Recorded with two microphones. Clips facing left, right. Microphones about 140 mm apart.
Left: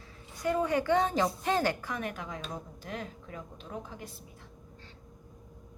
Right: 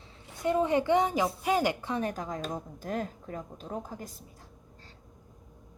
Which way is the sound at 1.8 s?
30° right (ahead or behind).